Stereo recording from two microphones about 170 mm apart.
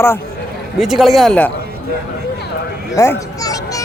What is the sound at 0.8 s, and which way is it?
Speech, centre (ahead or behind).